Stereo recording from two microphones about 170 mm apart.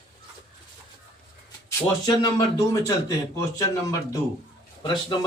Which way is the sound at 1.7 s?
25° left (ahead or behind).